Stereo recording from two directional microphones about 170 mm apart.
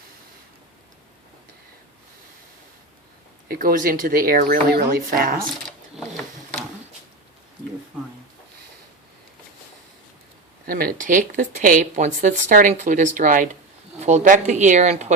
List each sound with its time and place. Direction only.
3.5 s speech: 55° right (ahead or behind)
10.7 s speech: 60° right (ahead or behind)